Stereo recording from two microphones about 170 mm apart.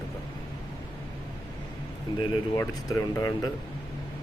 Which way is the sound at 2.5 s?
20° left (ahead or behind).